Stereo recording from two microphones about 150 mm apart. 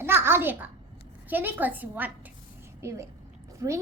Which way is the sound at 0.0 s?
15° right (ahead or behind).